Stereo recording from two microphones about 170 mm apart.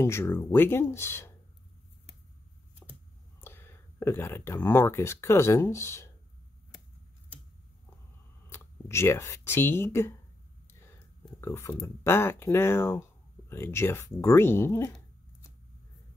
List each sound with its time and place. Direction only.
0.0 s speech: 15° left (ahead or behind)
3.3 s speech: 15° left (ahead or behind)
8.5 s speech: 15° left (ahead or behind)
10.7 s a sound: 15° left (ahead or behind)
11.4 s speech: 15° left (ahead or behind)